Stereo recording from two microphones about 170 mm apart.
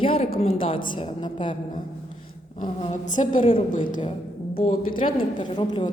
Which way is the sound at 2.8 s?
45° left (ahead or behind).